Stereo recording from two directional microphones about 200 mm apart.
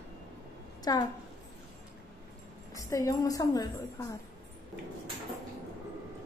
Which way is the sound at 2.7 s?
15° left (ahead or behind).